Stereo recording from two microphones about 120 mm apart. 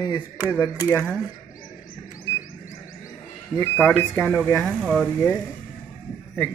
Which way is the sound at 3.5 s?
15° left (ahead or behind).